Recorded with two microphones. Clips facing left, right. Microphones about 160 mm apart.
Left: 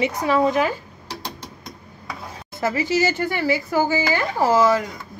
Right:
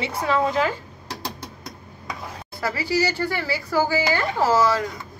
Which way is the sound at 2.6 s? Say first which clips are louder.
Left 3 dB; 20° left (ahead or behind).